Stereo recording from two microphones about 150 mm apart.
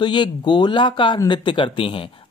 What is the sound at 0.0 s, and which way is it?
Speech, 30° left (ahead or behind).